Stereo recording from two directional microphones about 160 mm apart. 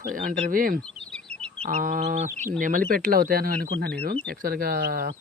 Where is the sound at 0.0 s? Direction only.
60° right (ahead or behind).